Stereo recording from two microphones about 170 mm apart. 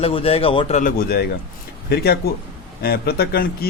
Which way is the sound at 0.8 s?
60° left (ahead or behind).